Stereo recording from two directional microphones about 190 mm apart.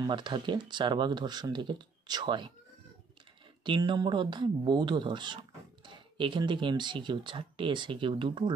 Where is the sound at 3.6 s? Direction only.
25° right (ahead or behind).